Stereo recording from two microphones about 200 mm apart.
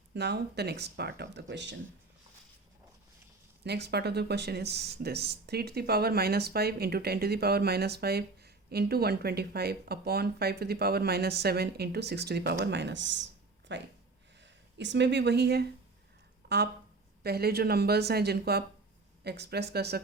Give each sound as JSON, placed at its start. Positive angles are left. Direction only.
{"t": 0.1, "sound": "speech", "side_deg": -55}
{"t": 3.6, "sound": "speech", "side_deg": -55}